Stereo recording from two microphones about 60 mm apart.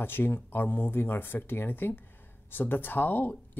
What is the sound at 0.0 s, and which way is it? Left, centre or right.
Speech, left.